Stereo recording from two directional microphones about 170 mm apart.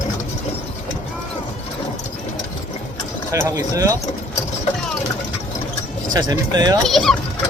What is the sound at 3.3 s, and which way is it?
Speech, 20° right (ahead or behind).